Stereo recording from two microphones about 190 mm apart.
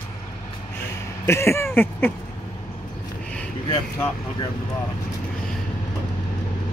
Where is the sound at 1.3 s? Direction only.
15° left (ahead or behind).